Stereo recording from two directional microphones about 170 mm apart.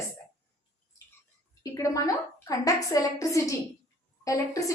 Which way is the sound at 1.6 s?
20° left (ahead or behind).